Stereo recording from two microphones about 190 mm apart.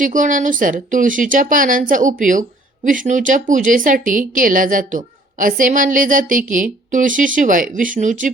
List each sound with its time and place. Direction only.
0.0 s a woman's voice: 45° right (ahead or behind)